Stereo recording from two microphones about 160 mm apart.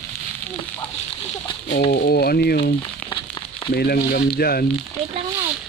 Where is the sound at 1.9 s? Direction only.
75° left (ahead or behind).